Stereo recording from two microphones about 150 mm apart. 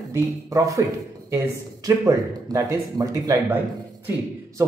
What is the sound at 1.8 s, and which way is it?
Speech, 20° right (ahead or behind).